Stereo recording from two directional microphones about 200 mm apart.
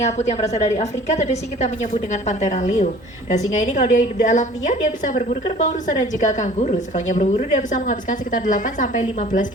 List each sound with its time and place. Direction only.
0.0 s a woman's voice: 35° left (ahead or behind)